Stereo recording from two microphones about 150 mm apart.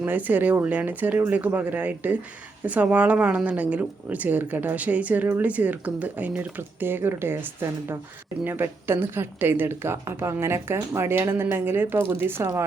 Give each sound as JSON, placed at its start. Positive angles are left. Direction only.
{"t": 0.0, "sound": "speech", "side_deg": -10}
{"t": 8.4, "sound": "speech", "side_deg": -15}